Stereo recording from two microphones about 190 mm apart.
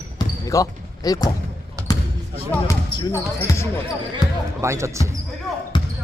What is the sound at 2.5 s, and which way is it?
Speech, 15° left (ahead or behind).